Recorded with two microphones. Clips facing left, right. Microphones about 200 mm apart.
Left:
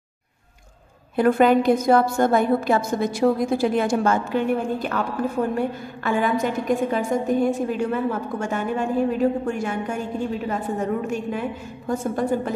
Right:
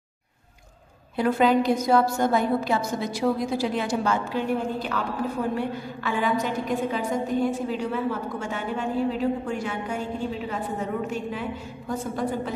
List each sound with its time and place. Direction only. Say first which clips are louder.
1.1 s a woman's voice: left 4 dB; 55° left (ahead or behind)
11.9 s a woman's voice: left 5 dB; 50° left (ahead or behind)